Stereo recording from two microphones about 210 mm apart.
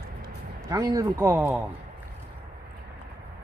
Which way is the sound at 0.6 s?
15° right (ahead or behind).